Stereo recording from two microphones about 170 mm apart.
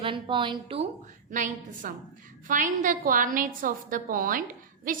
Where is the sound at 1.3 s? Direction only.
50° right (ahead or behind).